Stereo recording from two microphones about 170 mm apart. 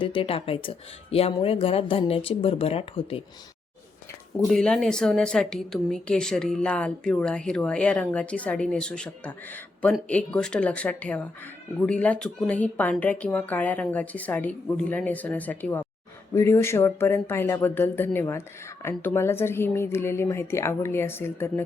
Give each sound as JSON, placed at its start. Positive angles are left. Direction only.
{"t": 0.0, "sound": "speech", "side_deg": 30}
{"t": 4.4, "sound": "a woman's voice", "side_deg": 5}